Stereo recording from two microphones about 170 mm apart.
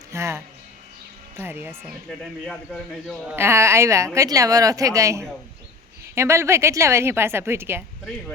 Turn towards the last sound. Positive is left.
turn(degrees=-15)  # may be behind; listen again after turning